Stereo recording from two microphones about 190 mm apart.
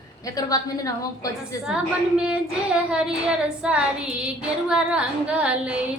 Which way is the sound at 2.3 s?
5° right (ahead or behind).